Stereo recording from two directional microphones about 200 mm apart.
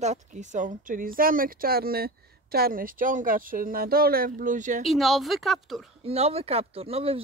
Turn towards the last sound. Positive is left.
turn(degrees=-30)  # may be behind; listen again after turning